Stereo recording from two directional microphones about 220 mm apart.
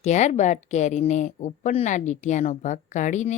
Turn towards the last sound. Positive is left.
turn(degrees=35)  # may be behind; listen again after turning